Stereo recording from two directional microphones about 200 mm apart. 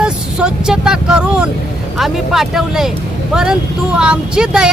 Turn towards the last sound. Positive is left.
turn(degrees=-5)  # may be behind; listen again after turning